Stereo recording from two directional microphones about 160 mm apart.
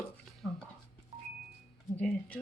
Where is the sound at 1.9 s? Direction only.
10° left (ahead or behind).